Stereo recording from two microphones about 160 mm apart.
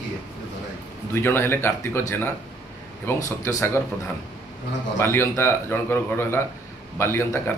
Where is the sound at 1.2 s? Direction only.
15° left (ahead or behind).